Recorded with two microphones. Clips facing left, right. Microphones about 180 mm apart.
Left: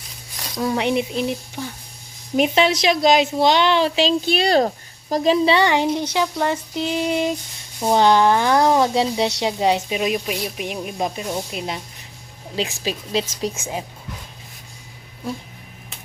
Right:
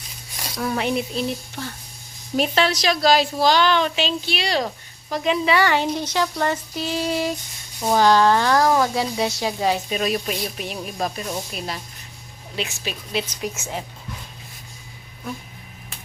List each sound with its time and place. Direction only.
0.5 s a woman's voice: 20° left (ahead or behind)
4.4 s speech: 45° left (ahead or behind)
5.0 s a woman's voice: 35° left (ahead or behind)
12.5 s speech: 35° left (ahead or behind)
13.6 s speech: 15° left (ahead or behind)